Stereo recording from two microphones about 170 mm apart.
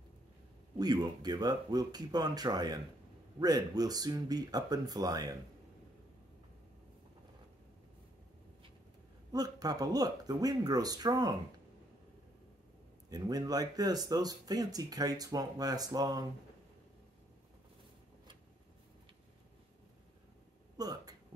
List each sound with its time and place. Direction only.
0.7 s speech: 25° right (ahead or behind)
9.3 s speech: 20° right (ahead or behind)
13.1 s speech: 20° right (ahead or behind)
20.7 s speech: 20° right (ahead or behind)